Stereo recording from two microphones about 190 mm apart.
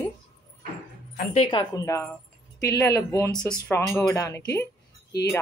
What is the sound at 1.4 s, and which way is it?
Speech, 20° left (ahead or behind).